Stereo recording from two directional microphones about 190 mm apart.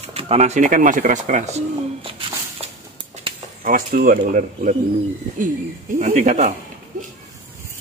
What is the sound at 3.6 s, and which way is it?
Speech, 45° right (ahead or behind).